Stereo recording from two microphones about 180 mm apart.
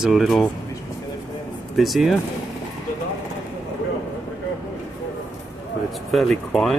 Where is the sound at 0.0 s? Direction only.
Centre (ahead or behind).